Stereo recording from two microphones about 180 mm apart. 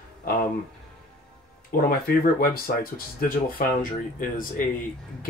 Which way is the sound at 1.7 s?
55° left (ahead or behind).